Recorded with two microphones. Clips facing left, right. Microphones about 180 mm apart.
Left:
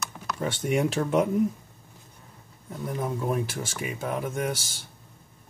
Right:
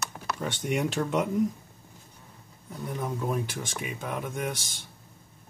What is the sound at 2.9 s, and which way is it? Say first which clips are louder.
Speech: left 2 dB; 5° left (ahead or behind).